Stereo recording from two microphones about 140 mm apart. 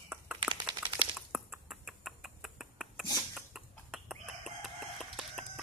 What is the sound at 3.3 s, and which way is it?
Chicken, 5° right (ahead or behind).